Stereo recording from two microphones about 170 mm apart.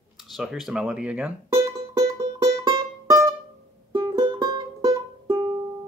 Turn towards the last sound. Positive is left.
turn(degrees=-25)  # may be behind; listen again after turning